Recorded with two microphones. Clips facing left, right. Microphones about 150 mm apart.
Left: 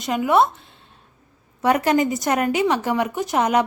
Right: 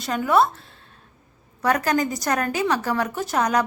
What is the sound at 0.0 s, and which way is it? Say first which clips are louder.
Speech: left 2 dB; 20° left (ahead or behind).